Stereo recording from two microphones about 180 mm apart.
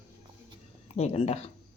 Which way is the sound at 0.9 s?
35° left (ahead or behind).